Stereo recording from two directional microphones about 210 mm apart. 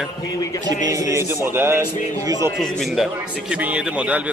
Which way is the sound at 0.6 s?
15° right (ahead or behind).